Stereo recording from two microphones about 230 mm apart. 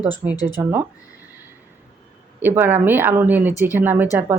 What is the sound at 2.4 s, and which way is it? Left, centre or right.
Speech, centre.